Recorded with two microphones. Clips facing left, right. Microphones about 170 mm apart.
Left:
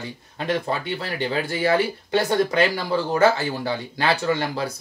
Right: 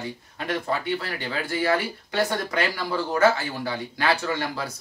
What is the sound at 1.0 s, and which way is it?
Speech, 25° left (ahead or behind).